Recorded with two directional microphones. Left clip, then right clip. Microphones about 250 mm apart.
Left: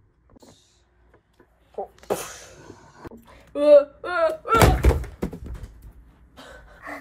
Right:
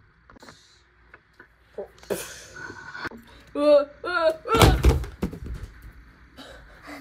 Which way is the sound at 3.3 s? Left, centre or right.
Centre.